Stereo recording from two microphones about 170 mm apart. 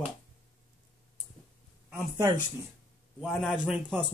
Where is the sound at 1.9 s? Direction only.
20° right (ahead or behind).